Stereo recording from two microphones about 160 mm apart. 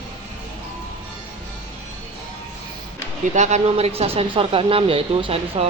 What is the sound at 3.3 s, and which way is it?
Speech, 50° right (ahead or behind).